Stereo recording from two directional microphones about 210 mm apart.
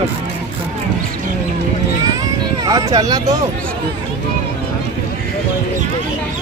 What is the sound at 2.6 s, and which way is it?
Speech, 15° right (ahead or behind).